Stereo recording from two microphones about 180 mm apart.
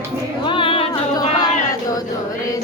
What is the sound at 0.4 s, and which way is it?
Music, 30° left (ahead or behind).